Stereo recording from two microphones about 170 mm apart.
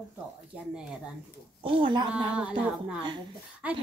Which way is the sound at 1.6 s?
30° right (ahead or behind).